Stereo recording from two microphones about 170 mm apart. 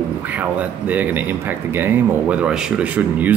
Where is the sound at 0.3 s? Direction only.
10° right (ahead or behind).